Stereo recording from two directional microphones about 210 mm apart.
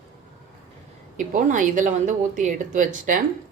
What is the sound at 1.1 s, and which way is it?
Speech, 40° right (ahead or behind).